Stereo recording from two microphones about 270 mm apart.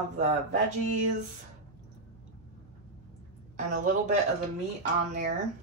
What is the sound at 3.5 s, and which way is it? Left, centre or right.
Speech, right.